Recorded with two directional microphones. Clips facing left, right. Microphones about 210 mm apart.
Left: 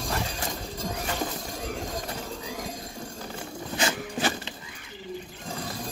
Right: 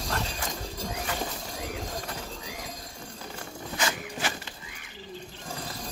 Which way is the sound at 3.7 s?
30° left (ahead or behind).